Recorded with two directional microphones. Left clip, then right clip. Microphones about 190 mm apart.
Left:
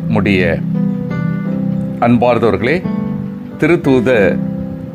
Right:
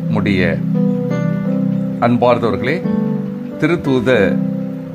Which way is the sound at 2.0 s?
10° left (ahead or behind).